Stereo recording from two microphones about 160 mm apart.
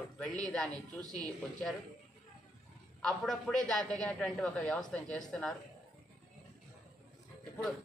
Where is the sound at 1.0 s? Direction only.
25° right (ahead or behind).